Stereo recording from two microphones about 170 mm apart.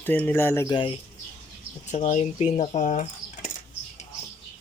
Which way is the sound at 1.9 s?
45° left (ahead or behind).